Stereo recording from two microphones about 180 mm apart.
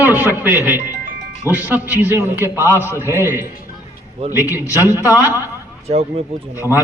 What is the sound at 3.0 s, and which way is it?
Speech, 15° right (ahead or behind).